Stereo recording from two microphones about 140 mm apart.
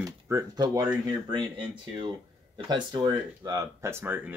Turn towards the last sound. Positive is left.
turn(degrees=-15)  # may be behind; listen again after turning